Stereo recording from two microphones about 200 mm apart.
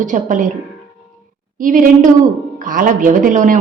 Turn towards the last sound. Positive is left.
turn(degrees=-40)  # may be behind; listen again after turning